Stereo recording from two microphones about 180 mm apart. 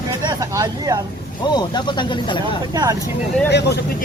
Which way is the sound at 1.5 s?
25° left (ahead or behind).